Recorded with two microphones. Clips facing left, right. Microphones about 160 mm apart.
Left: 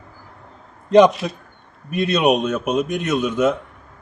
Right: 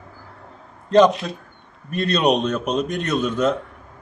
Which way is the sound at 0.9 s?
15° left (ahead or behind).